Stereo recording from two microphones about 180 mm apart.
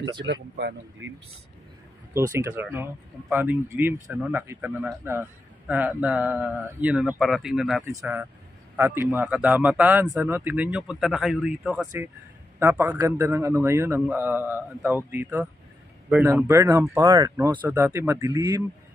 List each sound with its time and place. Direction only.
0.2 s speech: 75° right (ahead or behind)
2.1 s a man's voice: 15° right (ahead or behind)
7.9 s a man's voice: 15° right (ahead or behind)